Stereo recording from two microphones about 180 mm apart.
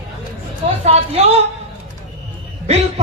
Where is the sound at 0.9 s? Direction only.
35° right (ahead or behind).